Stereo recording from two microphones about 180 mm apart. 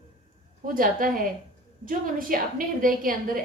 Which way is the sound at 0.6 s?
50° right (ahead or behind).